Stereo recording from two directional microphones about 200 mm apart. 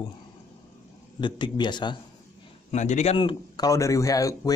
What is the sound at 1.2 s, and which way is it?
Speech, 25° left (ahead or behind).